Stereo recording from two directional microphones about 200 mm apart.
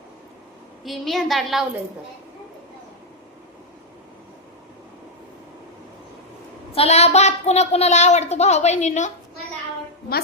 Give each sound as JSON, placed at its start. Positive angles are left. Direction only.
{"t": 0.9, "sound": "a woman's voice", "side_deg": 0}
{"t": 6.7, "sound": "a woman's voice", "side_deg": 30}